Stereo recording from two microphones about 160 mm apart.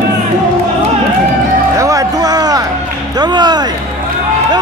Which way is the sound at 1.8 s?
20° right (ahead or behind).